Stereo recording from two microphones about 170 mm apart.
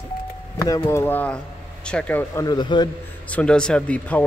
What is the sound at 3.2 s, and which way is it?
Speech, 5° left (ahead or behind).